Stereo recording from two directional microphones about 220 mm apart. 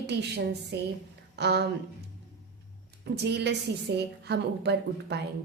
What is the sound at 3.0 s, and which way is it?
Speech, 50° right (ahead or behind).